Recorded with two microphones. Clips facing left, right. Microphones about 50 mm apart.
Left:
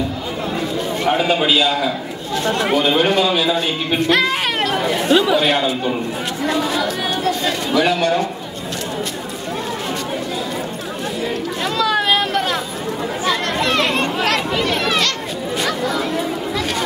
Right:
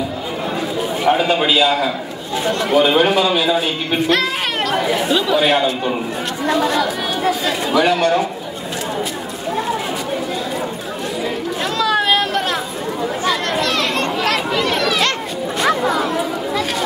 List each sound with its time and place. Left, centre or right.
0.7 s a sound: centre
2.5 s speech: centre
5.1 s speech: centre
5.4 s speech: centre
11.6 s a sound: centre
13.2 s chatter: centre
13.6 s chatter: centre
14.2 s chatter: centre
15.6 s a sound: centre